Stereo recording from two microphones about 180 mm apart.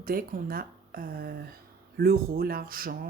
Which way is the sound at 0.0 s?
55° right (ahead or behind).